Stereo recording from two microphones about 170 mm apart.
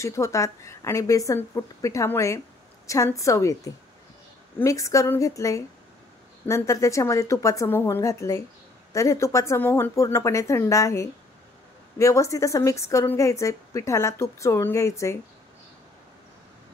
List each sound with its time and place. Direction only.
0.0 s a woman's voice: 20° left (ahead or behind)